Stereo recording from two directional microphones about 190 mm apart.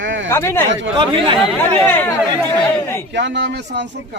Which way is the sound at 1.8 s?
10° left (ahead or behind).